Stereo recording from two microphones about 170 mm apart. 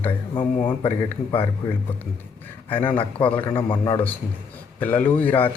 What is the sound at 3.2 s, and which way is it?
Speech, 10° left (ahead or behind).